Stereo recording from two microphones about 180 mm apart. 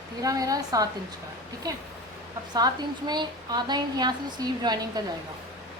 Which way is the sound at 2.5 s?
25° right (ahead or behind).